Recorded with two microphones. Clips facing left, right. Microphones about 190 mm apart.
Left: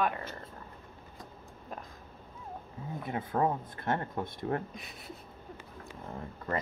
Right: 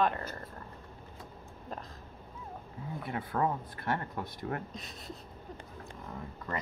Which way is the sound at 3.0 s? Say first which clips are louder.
Left 2 dB; 25° left (ahead or behind).